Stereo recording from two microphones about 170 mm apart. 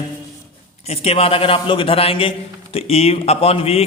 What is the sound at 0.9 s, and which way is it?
A man's voice, 35° left (ahead or behind).